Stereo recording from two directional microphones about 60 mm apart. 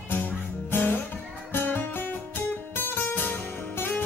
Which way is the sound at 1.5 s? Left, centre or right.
Left.